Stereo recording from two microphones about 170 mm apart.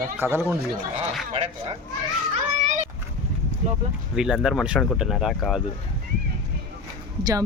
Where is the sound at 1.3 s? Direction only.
35° right (ahead or behind).